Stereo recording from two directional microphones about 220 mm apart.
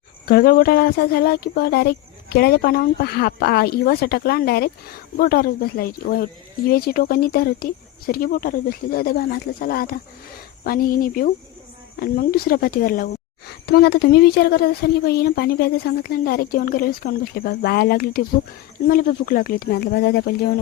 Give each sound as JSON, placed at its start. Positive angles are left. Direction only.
{"t": 0.3, "sound": "speech", "side_deg": 40}